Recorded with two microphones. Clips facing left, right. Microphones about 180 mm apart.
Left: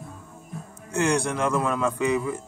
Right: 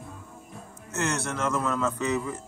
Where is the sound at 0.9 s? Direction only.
15° left (ahead or behind).